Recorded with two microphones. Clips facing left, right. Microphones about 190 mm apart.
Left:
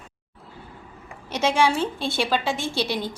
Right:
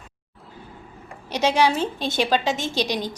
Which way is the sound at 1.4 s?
35° right (ahead or behind).